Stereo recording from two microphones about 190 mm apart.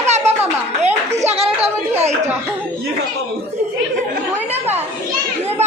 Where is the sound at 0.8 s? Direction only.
35° right (ahead or behind).